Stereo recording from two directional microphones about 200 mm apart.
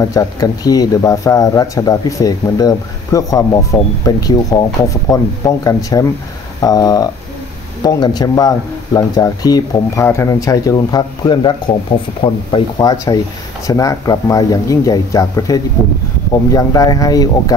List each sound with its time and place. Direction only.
0.0 s speech: 20° left (ahead or behind)